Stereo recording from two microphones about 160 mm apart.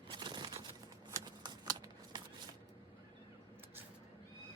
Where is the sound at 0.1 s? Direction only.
30° right (ahead or behind).